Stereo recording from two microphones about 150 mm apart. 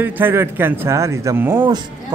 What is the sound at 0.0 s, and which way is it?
A man's voice, 15° right (ahead or behind).